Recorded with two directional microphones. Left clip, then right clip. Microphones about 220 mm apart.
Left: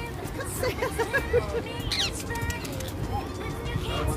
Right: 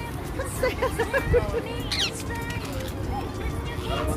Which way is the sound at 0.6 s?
50° left (ahead or behind).